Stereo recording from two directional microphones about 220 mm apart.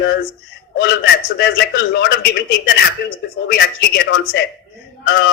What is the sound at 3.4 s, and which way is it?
Speech, 45° left (ahead or behind).